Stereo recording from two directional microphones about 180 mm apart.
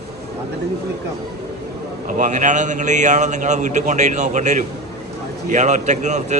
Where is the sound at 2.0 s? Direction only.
45° right (ahead or behind).